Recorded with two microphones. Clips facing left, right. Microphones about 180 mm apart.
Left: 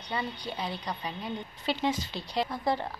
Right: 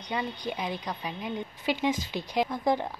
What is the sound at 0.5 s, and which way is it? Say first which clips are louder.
A woman's voice: right 2 dB; 15° right (ahead or behind).